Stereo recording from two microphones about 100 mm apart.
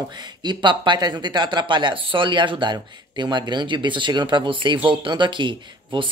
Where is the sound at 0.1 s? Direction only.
45° right (ahead or behind).